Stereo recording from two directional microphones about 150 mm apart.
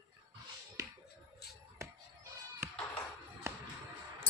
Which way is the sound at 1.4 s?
90° left.